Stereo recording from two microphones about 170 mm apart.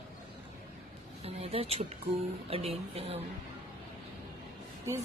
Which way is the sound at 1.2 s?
35° right (ahead or behind).